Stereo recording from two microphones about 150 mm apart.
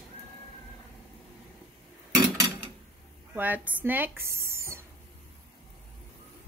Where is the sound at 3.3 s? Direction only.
10° right (ahead or behind).